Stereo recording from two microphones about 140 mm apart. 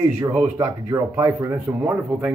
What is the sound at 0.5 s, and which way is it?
Speech, 20° right (ahead or behind).